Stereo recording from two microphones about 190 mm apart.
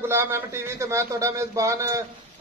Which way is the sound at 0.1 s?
15° right (ahead or behind).